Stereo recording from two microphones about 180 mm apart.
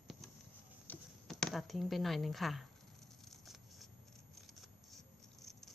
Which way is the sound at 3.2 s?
Centre (ahead or behind).